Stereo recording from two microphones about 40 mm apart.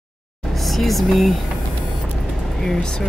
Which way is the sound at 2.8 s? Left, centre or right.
Centre.